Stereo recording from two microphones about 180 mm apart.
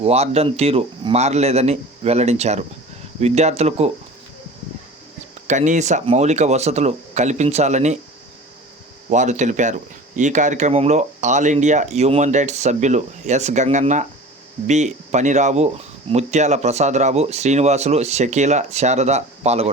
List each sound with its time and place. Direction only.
0.0 s speech: 35° right (ahead or behind)
5.5 s speech: 45° right (ahead or behind)
9.0 s speech: 40° right (ahead or behind)